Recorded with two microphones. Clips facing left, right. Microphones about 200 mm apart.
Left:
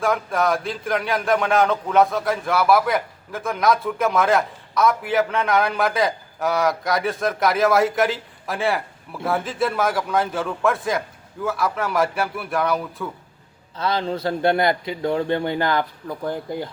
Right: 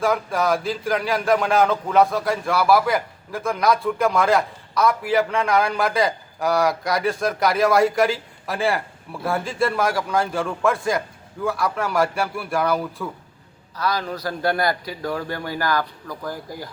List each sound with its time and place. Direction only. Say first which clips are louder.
0.0 s speech: even; centre (ahead or behind)
13.7 s a man's voice: left 2 dB; 25° left (ahead or behind)